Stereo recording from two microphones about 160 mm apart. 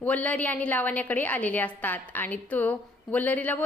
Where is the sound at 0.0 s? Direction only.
10° left (ahead or behind).